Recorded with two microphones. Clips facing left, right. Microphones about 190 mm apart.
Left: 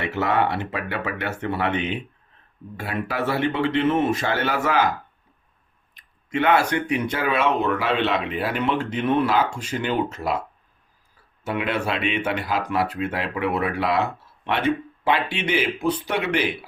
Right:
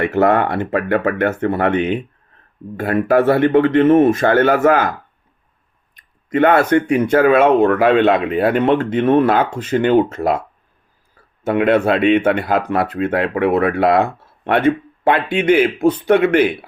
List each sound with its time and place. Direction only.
0.0 s speech: 50° right (ahead or behind)
6.3 s speech: 50° right (ahead or behind)
11.4 s speech: 55° right (ahead or behind)